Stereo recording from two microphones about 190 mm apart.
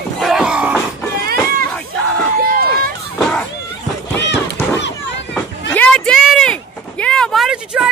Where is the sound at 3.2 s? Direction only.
5° left (ahead or behind).